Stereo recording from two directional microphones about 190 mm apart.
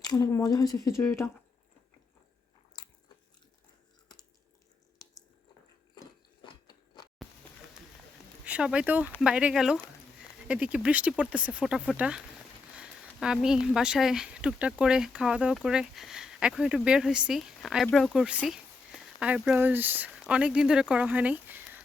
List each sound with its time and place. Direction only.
0.0 s speech: 20° left (ahead or behind)
6.4 s biting: 20° left (ahead or behind)
8.4 s speech: 5° right (ahead or behind)